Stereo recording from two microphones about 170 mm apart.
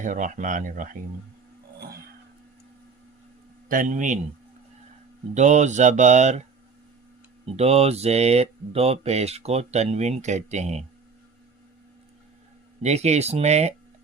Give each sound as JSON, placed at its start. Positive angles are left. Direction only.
{"t": 0.0, "sound": "speech", "side_deg": -50}
{"t": 3.7, "sound": "speech", "side_deg": -50}
{"t": 5.3, "sound": "speech", "side_deg": -40}
{"t": 7.5, "sound": "speech", "side_deg": -35}
{"t": 12.8, "sound": "speech", "side_deg": -40}